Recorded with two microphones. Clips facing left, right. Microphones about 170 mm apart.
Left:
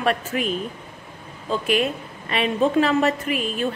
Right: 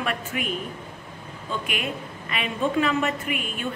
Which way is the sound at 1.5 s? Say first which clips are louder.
Left 8 dB; 35° left (ahead or behind).